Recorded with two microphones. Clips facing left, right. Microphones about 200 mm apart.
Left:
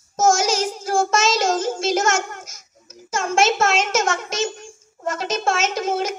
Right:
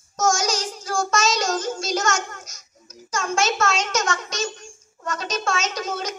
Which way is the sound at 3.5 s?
25° left (ahead or behind).